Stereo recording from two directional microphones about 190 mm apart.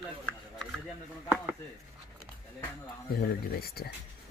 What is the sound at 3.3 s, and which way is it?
Speech, 55° left (ahead or behind).